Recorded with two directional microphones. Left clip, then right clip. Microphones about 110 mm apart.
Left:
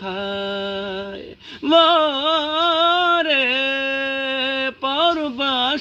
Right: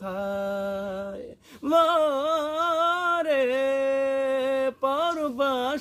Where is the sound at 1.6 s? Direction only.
55° right (ahead or behind).